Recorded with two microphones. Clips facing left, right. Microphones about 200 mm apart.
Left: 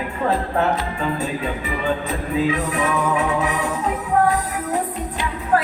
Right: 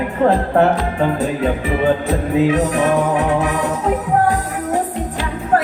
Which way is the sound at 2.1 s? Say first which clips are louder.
Right 5 dB; 75° right (ahead or behind).